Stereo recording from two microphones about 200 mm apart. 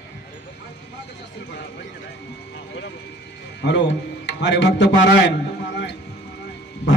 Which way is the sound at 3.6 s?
60° left (ahead or behind).